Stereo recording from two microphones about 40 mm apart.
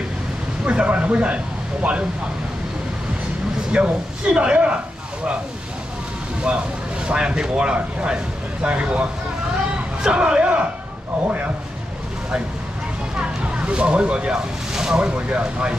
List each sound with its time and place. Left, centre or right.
0.7 s speech: right
3.7 s speech: right
7.1 s speech: right
10.0 s speech: right
13.2 s a sound: right
14.7 s a sound: centre
15.0 s speech: right